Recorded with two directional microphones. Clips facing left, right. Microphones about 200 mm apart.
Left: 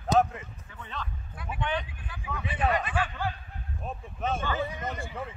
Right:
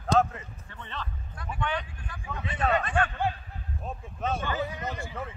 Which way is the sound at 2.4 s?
5° left (ahead or behind).